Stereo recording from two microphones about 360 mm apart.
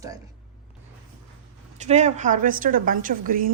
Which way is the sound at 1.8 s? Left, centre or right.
Centre.